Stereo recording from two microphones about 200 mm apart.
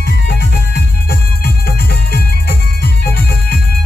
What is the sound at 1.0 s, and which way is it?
Music, 50° left (ahead or behind).